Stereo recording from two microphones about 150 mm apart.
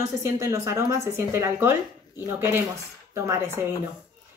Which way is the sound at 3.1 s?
15° right (ahead or behind).